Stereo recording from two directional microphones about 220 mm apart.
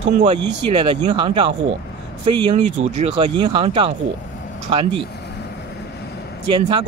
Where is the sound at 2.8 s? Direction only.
30° right (ahead or behind).